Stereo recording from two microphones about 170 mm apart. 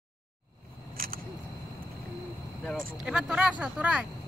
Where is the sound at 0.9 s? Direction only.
60° right (ahead or behind).